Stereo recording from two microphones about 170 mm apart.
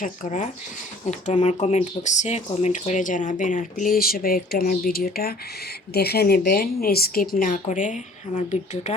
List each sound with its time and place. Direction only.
0.0 s a woman's voice: 50° left (ahead or behind)